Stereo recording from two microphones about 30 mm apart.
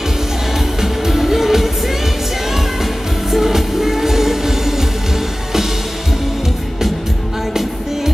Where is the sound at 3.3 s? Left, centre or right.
Centre.